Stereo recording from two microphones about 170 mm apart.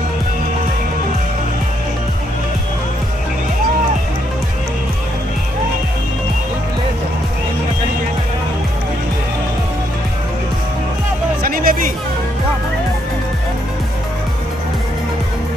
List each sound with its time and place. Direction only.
11.4 s music: 55° right (ahead or behind)